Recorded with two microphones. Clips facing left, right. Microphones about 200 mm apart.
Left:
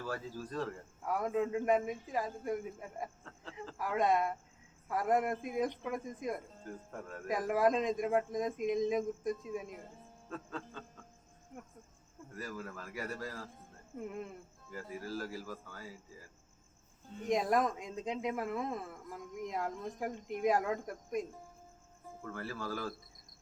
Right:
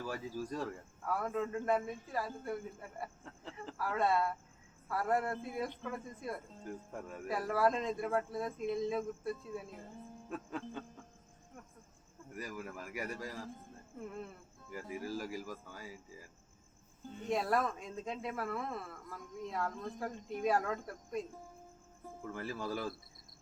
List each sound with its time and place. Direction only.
0.0 s speech: 15° right (ahead or behind)
1.0 s speech: 15° left (ahead or behind)
10.2 s speech: 15° right (ahead or behind)
12.3 s speech: 15° right (ahead or behind)
14.1 s speech: 15° left (ahead or behind)
14.7 s speech: 15° right (ahead or behind)
17.2 s speech: 15° left (ahead or behind)
22.3 s speech: 15° right (ahead or behind)